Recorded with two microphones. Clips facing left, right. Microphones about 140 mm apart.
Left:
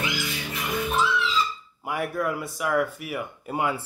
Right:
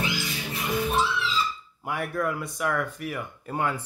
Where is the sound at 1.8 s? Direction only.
Centre (ahead or behind).